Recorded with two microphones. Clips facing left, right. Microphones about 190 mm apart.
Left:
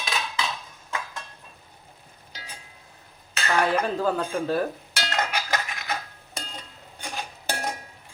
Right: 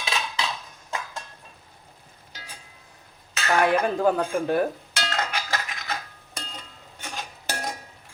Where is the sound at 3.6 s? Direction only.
15° right (ahead or behind).